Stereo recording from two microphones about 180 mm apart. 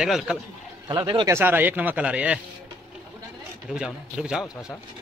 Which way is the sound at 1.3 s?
10° right (ahead or behind).